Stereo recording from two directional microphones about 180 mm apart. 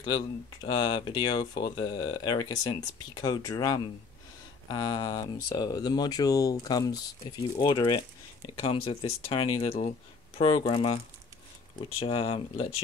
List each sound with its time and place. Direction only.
0.0 s speech: 25° left (ahead or behind)
12.0 s speech: 30° left (ahead or behind)